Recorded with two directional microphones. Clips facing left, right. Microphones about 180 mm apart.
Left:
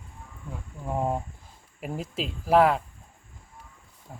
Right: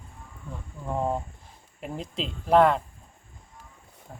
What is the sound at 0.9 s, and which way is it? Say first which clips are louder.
Speech: even; 10° left (ahead or behind).